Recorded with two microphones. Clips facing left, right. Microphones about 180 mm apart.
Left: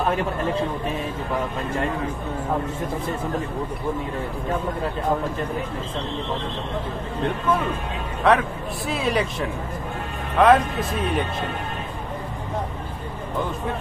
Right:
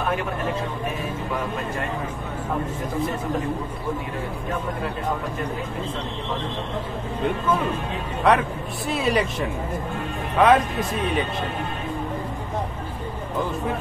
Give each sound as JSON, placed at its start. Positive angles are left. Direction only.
{"t": 8.2, "sound": "speech", "side_deg": 0}